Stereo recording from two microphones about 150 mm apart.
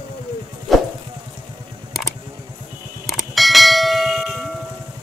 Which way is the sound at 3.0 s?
Centre (ahead or behind).